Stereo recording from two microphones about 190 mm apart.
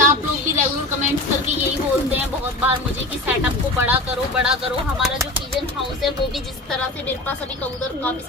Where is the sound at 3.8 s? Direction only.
5° right (ahead or behind).